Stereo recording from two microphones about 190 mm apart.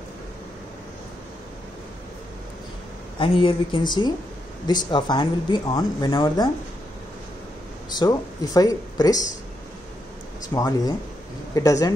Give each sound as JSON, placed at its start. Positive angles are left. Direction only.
{"t": 3.2, "sound": "speech", "side_deg": 30}
{"t": 7.9, "sound": "speech", "side_deg": 20}
{"t": 10.5, "sound": "speech", "side_deg": 20}